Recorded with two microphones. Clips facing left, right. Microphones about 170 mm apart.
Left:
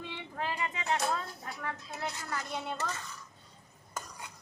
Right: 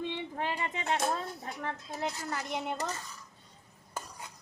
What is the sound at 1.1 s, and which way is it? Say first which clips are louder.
A child's voice: right 1 dB; 25° right (ahead or behind).